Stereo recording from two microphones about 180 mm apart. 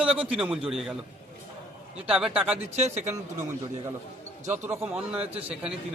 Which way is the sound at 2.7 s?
40° right (ahead or behind).